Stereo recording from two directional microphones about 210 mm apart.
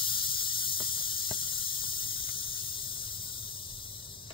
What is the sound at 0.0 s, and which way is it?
Squeal, 25° left (ahead or behind).